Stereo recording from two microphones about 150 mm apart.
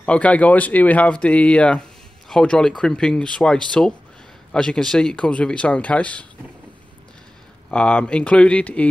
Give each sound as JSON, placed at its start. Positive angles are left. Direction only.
{"t": 0.0, "sound": "speech", "side_deg": 10}
{"t": 7.7, "sound": "speech", "side_deg": 10}